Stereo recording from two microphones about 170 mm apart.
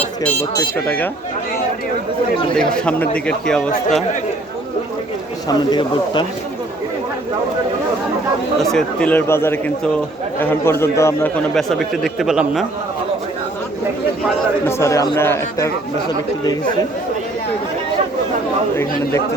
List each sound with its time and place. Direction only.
0.3 s speech: 10° left (ahead or behind)
2.6 s a man's voice: 5° left (ahead or behind)
5.5 s speech: 25° left (ahead or behind)
8.7 s speech: 5° left (ahead or behind)
11.5 s a man's voice: centre (ahead or behind)
14.7 s speech: 15° left (ahead or behind)